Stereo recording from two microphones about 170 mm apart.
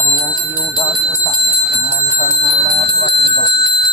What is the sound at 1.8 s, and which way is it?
Bell, 25° right (ahead or behind).